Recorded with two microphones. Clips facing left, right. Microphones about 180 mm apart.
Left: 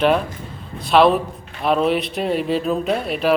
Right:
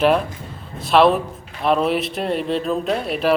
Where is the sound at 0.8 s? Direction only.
Centre (ahead or behind).